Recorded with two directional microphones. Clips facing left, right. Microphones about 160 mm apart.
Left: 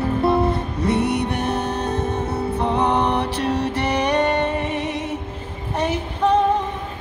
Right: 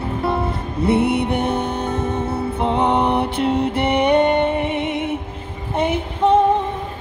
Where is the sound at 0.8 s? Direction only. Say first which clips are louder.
Right 4 dB; 30° right (ahead or behind).